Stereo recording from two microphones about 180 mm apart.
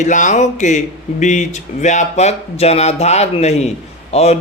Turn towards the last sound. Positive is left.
turn(degrees=35)  # may be behind; listen again after turning